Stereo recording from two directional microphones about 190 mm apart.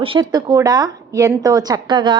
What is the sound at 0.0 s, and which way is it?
A woman's voice, 25° right (ahead or behind).